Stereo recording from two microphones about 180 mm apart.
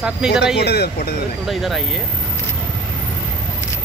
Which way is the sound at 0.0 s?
5° right (ahead or behind).